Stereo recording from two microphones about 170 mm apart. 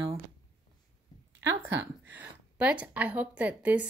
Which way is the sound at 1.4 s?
15° right (ahead or behind).